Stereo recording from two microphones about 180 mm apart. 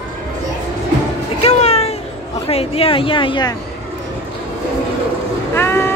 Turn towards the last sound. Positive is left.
turn(degrees=15)  # may be behind; listen again after turning